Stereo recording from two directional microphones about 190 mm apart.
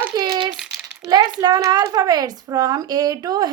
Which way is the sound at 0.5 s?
Centre (ahead or behind).